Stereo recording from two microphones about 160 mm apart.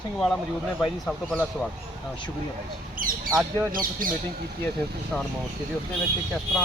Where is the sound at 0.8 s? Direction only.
5° left (ahead or behind).